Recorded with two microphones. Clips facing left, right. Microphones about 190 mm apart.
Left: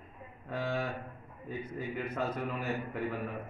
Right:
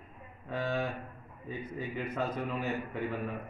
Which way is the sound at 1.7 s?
5° left (ahead or behind).